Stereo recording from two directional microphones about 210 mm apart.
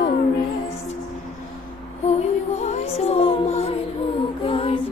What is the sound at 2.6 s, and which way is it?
Music, 30° left (ahead or behind).